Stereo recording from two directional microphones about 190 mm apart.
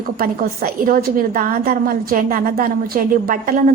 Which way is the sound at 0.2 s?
50° right (ahead or behind).